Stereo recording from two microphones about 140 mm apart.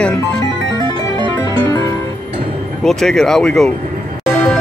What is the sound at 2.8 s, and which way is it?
Speech, 5° left (ahead or behind).